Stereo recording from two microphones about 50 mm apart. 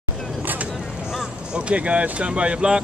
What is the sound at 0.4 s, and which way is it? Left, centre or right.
Vehicle, right.